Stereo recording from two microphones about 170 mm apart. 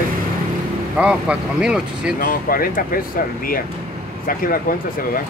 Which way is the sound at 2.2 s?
55° left (ahead or behind).